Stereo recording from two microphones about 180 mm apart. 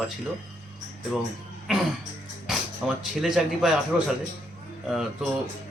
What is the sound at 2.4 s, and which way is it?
A man's voice, centre (ahead or behind).